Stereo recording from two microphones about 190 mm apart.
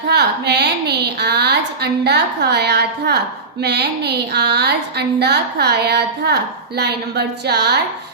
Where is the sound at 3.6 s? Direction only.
60° right (ahead or behind).